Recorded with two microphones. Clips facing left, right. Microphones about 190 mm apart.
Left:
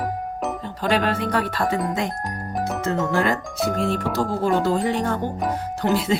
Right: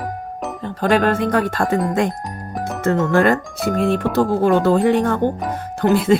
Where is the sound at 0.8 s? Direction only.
50° right (ahead or behind).